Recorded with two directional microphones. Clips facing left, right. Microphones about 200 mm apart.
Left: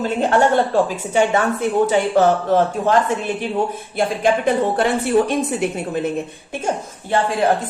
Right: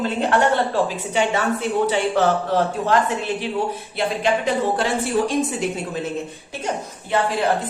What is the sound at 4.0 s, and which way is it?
A woman's voice, 50° left (ahead or behind).